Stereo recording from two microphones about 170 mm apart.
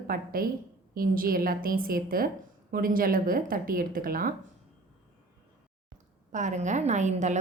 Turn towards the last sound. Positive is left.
turn(degrees=-45)  # may be behind; listen again after turning